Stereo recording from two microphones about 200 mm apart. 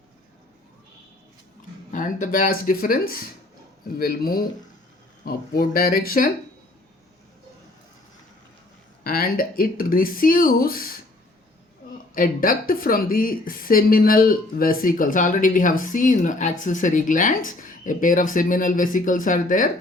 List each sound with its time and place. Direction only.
1.9 s speech: 40° left (ahead or behind)
9.0 s speech: 50° left (ahead or behind)
12.1 s speech: 45° left (ahead or behind)